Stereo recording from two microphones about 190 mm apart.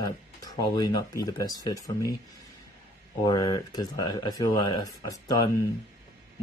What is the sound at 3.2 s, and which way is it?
Speech, 25° left (ahead or behind).